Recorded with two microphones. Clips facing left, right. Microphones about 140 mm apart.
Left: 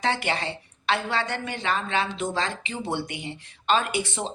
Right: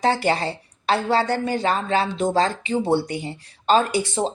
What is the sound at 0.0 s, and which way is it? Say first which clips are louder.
A woman's voice: right 6 dB; 40° right (ahead or behind).